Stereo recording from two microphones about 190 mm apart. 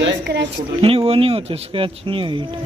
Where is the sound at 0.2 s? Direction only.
65° right (ahead or behind).